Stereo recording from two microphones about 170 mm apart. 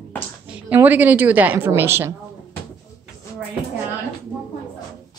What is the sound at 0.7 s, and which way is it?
A woman's voice, 10° right (ahead or behind).